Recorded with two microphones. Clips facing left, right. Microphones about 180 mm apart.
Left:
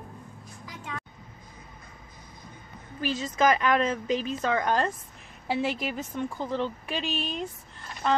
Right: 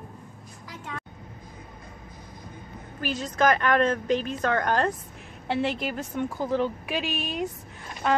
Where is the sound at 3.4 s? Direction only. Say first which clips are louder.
Right 1 dB; 5° left (ahead or behind).